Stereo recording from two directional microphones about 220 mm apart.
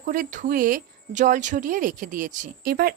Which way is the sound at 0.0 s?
35° right (ahead or behind).